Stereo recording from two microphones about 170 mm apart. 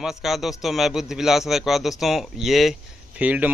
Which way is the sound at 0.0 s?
Centre (ahead or behind).